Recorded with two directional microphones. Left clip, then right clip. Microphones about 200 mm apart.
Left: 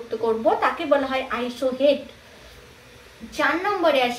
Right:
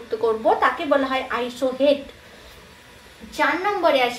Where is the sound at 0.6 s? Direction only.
30° right (ahead or behind).